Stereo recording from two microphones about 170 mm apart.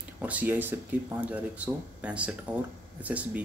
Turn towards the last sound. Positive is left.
turn(degrees=-10)  # may be behind; listen again after turning